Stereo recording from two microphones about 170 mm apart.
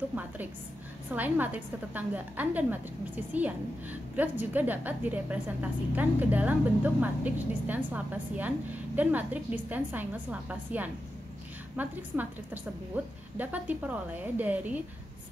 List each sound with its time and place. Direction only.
1.1 s a woman's voice: 10° right (ahead or behind)